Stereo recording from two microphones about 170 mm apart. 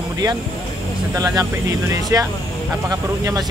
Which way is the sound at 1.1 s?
20° right (ahead or behind).